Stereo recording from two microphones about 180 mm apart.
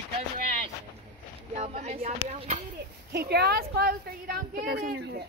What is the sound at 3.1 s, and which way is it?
A woman's voice, 60° right (ahead or behind).